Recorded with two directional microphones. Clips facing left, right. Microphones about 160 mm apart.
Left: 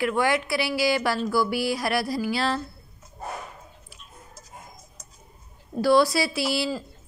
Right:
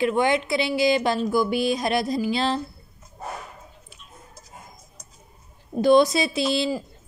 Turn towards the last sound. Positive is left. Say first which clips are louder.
# right 3 dB
turn(degrees=-20)  # may be behind; listen again after turning